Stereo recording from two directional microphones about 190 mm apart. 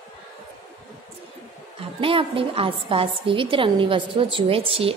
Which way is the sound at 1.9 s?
30° right (ahead or behind).